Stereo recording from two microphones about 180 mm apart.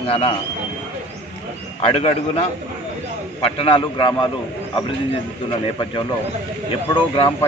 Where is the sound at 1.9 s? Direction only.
35° left (ahead or behind).